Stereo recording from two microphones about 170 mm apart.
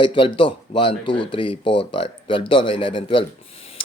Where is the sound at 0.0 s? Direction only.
30° left (ahead or behind).